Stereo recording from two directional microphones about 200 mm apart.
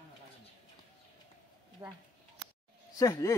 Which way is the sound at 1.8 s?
20° right (ahead or behind).